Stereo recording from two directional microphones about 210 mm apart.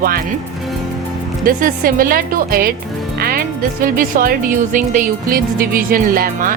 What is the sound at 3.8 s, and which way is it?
A woman's voice, 40° right (ahead or behind).